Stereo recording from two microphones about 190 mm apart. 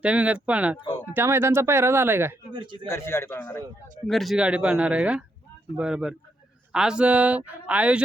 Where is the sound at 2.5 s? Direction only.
25° right (ahead or behind).